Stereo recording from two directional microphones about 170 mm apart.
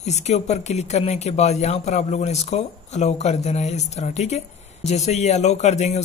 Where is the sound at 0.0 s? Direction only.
40° left (ahead or behind).